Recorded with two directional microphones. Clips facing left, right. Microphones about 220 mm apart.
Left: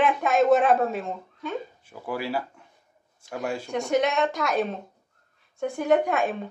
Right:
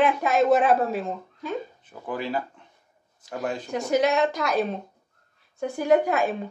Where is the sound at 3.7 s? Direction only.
Centre (ahead or behind).